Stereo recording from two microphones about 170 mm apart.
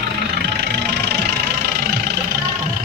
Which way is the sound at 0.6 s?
75° right (ahead or behind).